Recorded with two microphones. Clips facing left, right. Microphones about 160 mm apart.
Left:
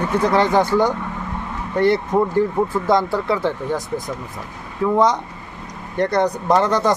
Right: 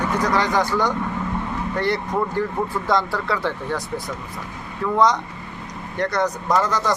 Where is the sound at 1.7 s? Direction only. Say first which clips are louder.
Left 7 dB; 25° left (ahead or behind).